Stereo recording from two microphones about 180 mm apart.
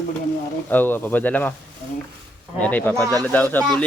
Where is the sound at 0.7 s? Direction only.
10° left (ahead or behind).